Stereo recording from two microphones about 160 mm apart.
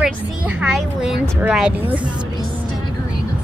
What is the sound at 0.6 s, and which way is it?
A woman's voice, 5° right (ahead or behind).